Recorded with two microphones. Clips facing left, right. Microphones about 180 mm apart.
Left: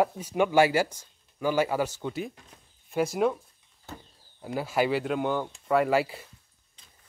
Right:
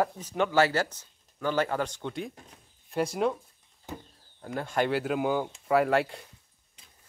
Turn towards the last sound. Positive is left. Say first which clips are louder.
# even
turn(degrees=0)  # may be behind; listen again after turning